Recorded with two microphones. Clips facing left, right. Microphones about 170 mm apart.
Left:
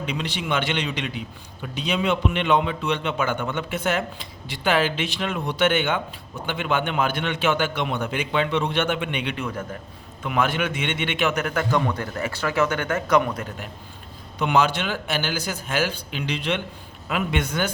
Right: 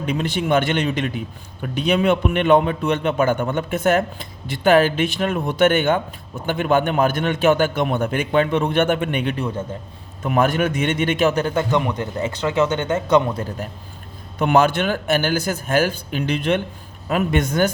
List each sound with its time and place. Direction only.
0.0 s a man's voice: 50° right (ahead or behind); by 13.7 s 30° right (ahead or behind)
14.3 s a man's voice: 50° right (ahead or behind)